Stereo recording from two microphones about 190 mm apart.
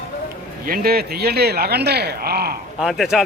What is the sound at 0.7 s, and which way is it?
Speech, 55° right (ahead or behind).